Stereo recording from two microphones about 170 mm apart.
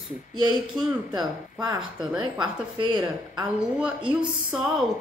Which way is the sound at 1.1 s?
25° right (ahead or behind).